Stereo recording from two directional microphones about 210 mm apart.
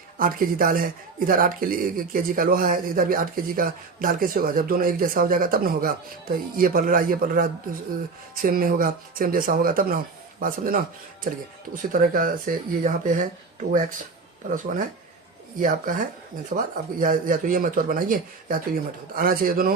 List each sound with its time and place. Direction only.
0.2 s speech: 40° right (ahead or behind)
14.5 s speech: 40° right (ahead or behind)